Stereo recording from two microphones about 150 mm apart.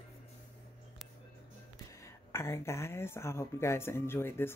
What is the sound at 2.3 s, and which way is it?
Speech, 20° left (ahead or behind).